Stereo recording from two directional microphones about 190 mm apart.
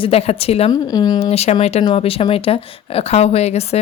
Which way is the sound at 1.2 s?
35° left (ahead or behind).